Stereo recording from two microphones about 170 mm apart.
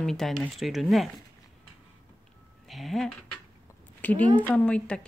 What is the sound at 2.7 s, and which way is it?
Speech, centre (ahead or behind).